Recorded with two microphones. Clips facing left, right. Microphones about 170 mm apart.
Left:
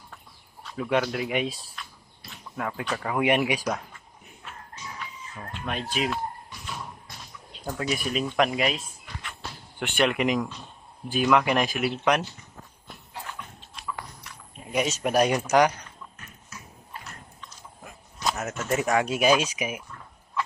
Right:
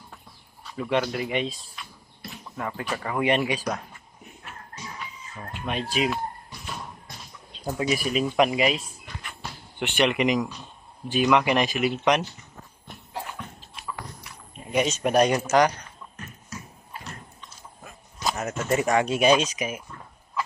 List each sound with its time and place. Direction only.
0.8 s speech: centre (ahead or behind)
3.0 s speech: 5° left (ahead or behind)
5.6 s speech: centre (ahead or behind)
7.6 s speech: 10° right (ahead or behind)
10.0 s speech: centre (ahead or behind)
13.8 s horse: centre (ahead or behind)
14.7 s speech: centre (ahead or behind)
15.4 s speech: 10° left (ahead or behind)
18.2 s speech: centre (ahead or behind)